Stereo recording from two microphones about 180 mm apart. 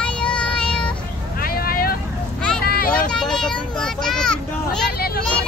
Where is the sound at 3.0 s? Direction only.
5° left (ahead or behind).